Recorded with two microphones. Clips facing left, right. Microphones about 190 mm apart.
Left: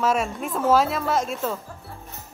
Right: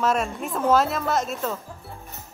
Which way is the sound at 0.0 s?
5° left (ahead or behind).